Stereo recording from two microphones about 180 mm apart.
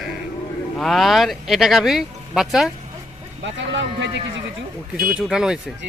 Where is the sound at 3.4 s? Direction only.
80° right.